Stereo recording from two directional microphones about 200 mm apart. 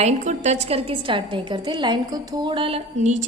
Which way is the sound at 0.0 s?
35° right (ahead or behind).